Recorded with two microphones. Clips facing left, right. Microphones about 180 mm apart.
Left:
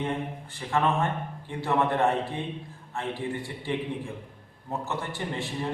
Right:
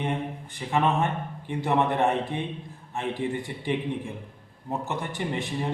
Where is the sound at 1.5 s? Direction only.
20° right (ahead or behind).